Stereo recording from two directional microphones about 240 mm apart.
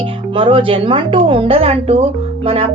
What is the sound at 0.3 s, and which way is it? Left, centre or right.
A woman's voice, right.